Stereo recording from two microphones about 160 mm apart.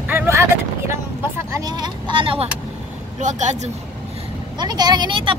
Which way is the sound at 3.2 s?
50° right (ahead or behind).